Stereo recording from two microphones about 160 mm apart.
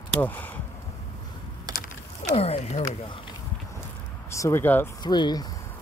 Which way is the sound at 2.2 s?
45° left (ahead or behind).